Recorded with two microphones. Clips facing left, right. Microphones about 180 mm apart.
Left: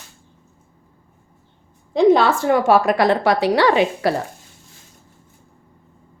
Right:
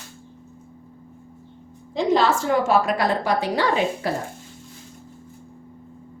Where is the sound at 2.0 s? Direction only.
55° left (ahead or behind); by 4.1 s 75° left (ahead or behind).